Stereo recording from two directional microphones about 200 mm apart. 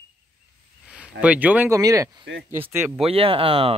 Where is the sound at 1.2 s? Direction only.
5° right (ahead or behind).